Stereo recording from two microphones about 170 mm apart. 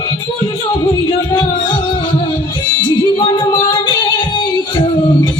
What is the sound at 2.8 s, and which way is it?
Music, 25° left (ahead or behind).